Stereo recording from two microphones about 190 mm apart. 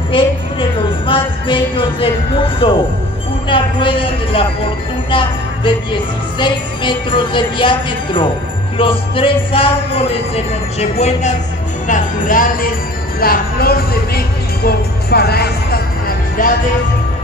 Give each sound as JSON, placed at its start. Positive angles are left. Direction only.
{"t": 0.1, "sound": "music", "side_deg": 25}
{"t": 3.4, "sound": "a man's voice", "side_deg": 25}
{"t": 5.1, "sound": "music", "side_deg": 25}
{"t": 11.9, "sound": "music", "side_deg": 45}
{"t": 13.2, "sound": "speech", "side_deg": 50}